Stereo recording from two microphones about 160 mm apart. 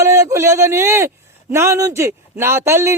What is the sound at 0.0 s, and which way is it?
A man's voice, 20° right (ahead or behind).